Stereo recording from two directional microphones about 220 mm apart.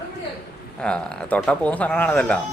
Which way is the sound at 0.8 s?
5° left (ahead or behind).